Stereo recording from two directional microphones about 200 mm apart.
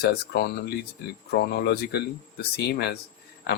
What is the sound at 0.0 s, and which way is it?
Speech, 55° left (ahead or behind).